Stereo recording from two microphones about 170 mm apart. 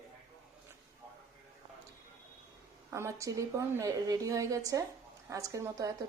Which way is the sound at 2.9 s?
15° right (ahead or behind).